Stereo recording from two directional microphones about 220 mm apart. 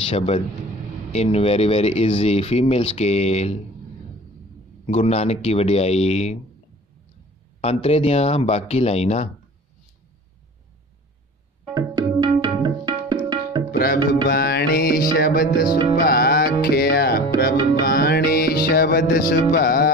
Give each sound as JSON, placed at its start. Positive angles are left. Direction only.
{"t": 1.1, "sound": "speech", "side_deg": 30}
{"t": 4.8, "sound": "speech", "side_deg": 30}
{"t": 7.6, "sound": "speech", "side_deg": 25}
{"t": 11.7, "sound": "tabla", "side_deg": -15}
{"t": 13.7, "sound": "music", "side_deg": 40}